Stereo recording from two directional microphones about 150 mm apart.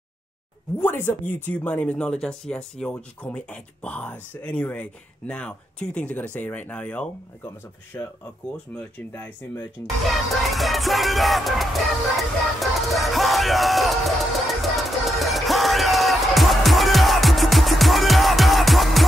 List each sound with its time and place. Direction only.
0.7 s speech: 10° left (ahead or behind)
10.4 s music: centre (ahead or behind)